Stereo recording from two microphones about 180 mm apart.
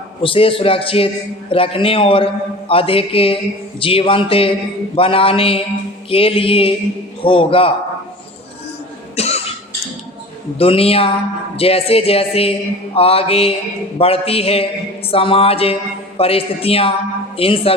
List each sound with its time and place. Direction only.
0.2 s a man's voice: 30° left (ahead or behind)
9.1 s cough: 35° left (ahead or behind)
10.6 s a man's voice: 30° left (ahead or behind)